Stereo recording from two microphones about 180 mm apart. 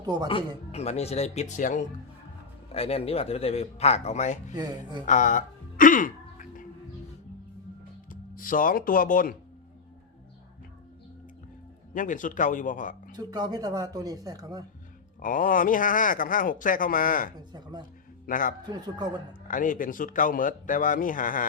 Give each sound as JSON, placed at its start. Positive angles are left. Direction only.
{"t": 0.0, "sound": "speech", "side_deg": -20}
{"t": 0.3, "sound": "a man's voice", "side_deg": 30}
{"t": 2.7, "sound": "a man's voice", "side_deg": 35}
{"t": 4.5, "sound": "speech", "side_deg": -20}
{"t": 5.0, "sound": "music", "side_deg": 45}
{"t": 8.1, "sound": "speech", "side_deg": 50}
{"t": 11.9, "sound": "speech", "side_deg": 45}
{"t": 13.1, "sound": "speech", "side_deg": -20}
{"t": 15.2, "sound": "speech", "side_deg": 50}
{"t": 17.5, "sound": "speech", "side_deg": -25}
{"t": 18.3, "sound": "speech", "side_deg": 50}
{"t": 18.6, "sound": "speech", "side_deg": -25}
{"t": 19.5, "sound": "speech", "side_deg": 50}